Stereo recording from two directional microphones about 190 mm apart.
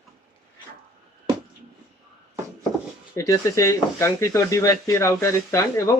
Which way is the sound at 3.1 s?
15° left (ahead or behind).